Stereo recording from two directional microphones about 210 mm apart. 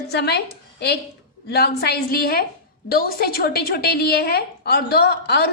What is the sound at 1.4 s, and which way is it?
A woman's voice, 50° left (ahead or behind).